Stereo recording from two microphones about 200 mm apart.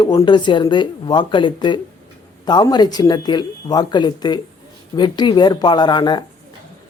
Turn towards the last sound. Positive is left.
turn(degrees=20)  # may be behind; listen again after turning